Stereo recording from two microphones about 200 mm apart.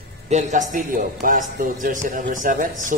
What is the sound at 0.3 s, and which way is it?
A man's voice, 35° right (ahead or behind).